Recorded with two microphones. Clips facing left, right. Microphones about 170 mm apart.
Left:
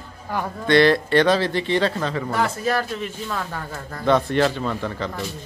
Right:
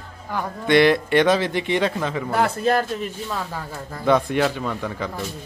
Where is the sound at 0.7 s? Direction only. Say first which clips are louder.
Even; 15° right (ahead or behind).